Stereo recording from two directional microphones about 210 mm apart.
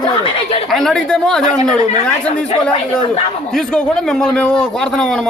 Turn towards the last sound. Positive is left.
turn(degrees=5)  # may be behind; listen again after turning